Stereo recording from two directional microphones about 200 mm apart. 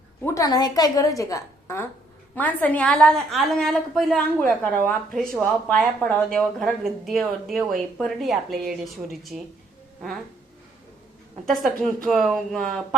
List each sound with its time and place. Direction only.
0.3 s a woman's voice: 15° left (ahead or behind); by 9.4 s centre (ahead or behind)
11.4 s speech: centre (ahead or behind)